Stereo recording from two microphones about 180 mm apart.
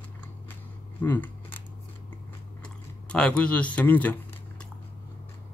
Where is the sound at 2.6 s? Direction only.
5° left (ahead or behind).